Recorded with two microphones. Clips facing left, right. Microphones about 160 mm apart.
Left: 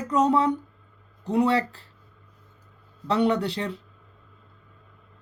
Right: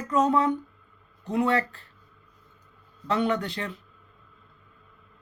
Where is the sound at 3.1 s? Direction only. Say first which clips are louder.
Left 3 dB; 30° left (ahead or behind).